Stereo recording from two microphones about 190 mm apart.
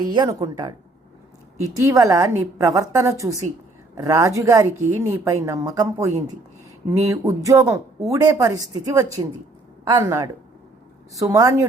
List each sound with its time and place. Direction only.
0.0 s a woman's voice: 20° right (ahead or behind)
1.7 s a woman's voice: 20° right (ahead or behind)